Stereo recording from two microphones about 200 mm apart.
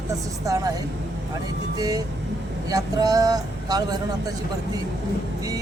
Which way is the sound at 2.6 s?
20° right (ahead or behind).